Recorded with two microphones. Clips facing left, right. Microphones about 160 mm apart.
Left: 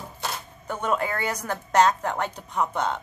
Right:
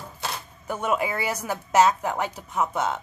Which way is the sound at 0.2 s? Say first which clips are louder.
Even; 10° right (ahead or behind).